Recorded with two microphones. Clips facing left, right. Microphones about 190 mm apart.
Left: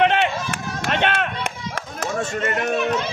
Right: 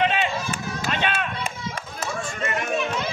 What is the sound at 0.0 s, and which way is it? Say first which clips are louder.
Run: left 4 dB; 65° left (ahead or behind).